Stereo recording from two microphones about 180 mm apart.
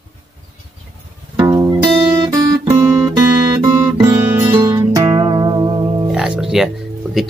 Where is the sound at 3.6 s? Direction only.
15° right (ahead or behind).